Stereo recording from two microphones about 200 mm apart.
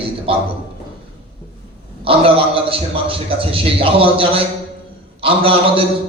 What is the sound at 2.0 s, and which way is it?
A man's voice, 30° right (ahead or behind).